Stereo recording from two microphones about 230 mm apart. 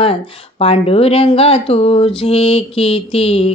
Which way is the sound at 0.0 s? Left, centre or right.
Left.